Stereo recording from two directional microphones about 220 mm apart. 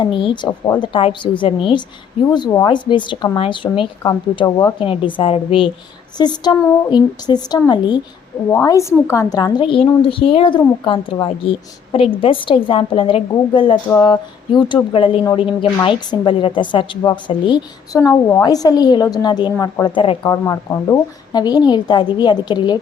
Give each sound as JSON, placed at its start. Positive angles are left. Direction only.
{"t": 0.2, "sound": "a woman's voice", "side_deg": 20}